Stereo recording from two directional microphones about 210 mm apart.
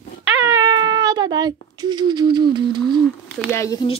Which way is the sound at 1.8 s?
20° right (ahead or behind).